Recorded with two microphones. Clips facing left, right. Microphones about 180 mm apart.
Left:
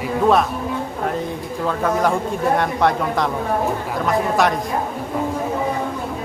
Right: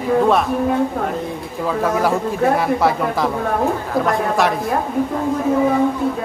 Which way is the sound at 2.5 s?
5° right (ahead or behind).